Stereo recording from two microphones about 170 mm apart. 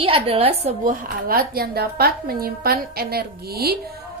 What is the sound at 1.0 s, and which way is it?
A woman's voice, 60° right (ahead or behind).